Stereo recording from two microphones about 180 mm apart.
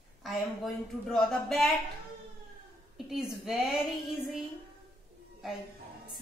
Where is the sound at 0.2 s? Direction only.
Centre (ahead or behind).